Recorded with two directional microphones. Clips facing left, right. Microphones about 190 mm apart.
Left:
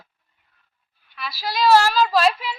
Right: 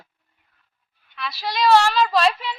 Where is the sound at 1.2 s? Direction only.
Centre (ahead or behind).